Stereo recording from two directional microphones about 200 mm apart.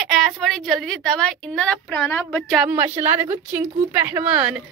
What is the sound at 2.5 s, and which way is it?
A woman's voice, 5° right (ahead or behind).